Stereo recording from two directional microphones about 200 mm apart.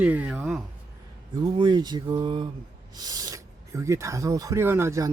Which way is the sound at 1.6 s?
20° right (ahead or behind).